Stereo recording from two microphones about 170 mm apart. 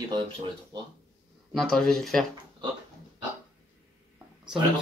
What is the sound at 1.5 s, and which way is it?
Speech, centre (ahead or behind).